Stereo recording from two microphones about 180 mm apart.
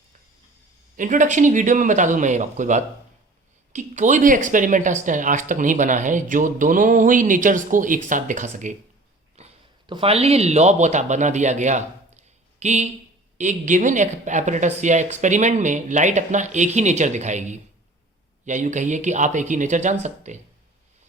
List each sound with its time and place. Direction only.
0.9 s speech: 45° right (ahead or behind)
9.3 s speech: 30° right (ahead or behind)